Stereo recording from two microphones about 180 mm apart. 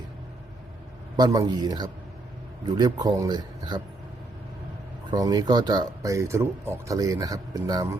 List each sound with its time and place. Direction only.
1.1 s speech: 20° right (ahead or behind)
5.1 s speech: 20° right (ahead or behind)